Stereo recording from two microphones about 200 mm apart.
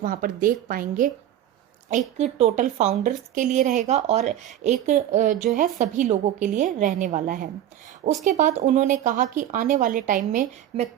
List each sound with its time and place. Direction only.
0.0 s a woman's voice: 45° right (ahead or behind)
2.1 s a woman's voice: 35° right (ahead or behind)